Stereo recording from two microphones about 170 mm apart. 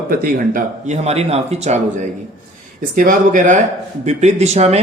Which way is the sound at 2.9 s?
50° right (ahead or behind).